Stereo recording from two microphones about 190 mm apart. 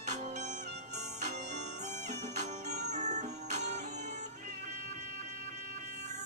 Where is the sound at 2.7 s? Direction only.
40° right (ahead or behind).